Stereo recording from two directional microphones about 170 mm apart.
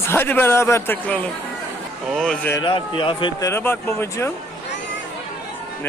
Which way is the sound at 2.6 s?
30° left (ahead or behind).